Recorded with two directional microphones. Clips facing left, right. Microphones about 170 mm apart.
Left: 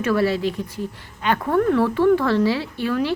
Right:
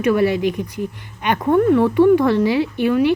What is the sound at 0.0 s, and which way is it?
A woman's voice, 15° right (ahead or behind).